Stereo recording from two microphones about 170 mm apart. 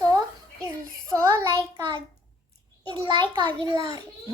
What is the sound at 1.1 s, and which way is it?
Speech, 15° right (ahead or behind).